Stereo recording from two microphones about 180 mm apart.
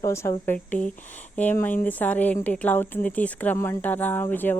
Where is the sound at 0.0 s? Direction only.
15° left (ahead or behind).